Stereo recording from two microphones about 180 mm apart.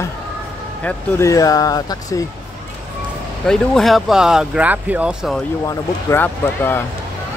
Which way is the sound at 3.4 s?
Centre (ahead or behind).